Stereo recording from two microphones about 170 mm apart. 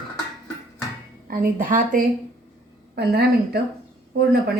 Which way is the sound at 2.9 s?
70° right (ahead or behind).